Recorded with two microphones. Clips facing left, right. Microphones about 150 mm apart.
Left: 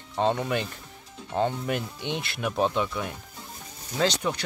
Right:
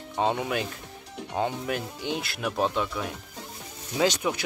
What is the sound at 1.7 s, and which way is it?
Speech, centre (ahead or behind).